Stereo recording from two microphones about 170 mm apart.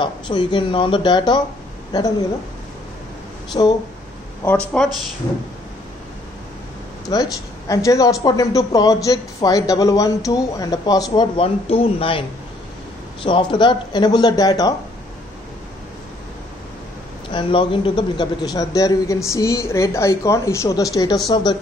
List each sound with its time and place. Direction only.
0.0 s speech: 25° left (ahead or behind)
3.6 s speech: 25° left (ahead or behind)
4.7 s speech: 5° left (ahead or behind)
7.1 s speech: 20° left (ahead or behind)
17.3 s speech: 30° left (ahead or behind)